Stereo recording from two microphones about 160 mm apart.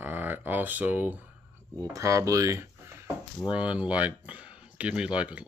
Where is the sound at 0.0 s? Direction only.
10° right (ahead or behind).